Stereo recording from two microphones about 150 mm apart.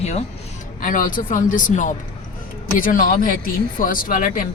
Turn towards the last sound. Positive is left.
turn(degrees=65)  # may be behind; listen again after turning